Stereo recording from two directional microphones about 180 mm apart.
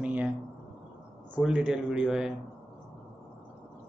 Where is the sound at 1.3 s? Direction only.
5° right (ahead or behind).